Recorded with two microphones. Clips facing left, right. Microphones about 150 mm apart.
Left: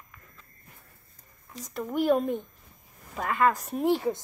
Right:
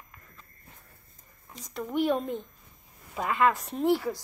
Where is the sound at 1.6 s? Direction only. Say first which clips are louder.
Even; centre (ahead or behind).